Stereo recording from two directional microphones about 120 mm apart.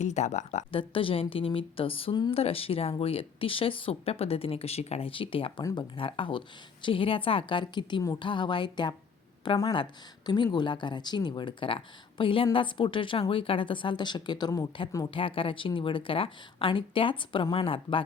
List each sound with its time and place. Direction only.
0.0 s speech: 75° left (ahead or behind)
0.7 s speech: 45° left (ahead or behind); by 15.1 s 30° left (ahead or behind)
15.1 s speech: 50° left (ahead or behind)